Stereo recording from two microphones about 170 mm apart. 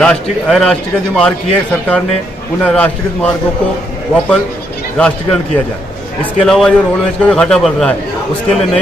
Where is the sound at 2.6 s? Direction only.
10° left (ahead or behind).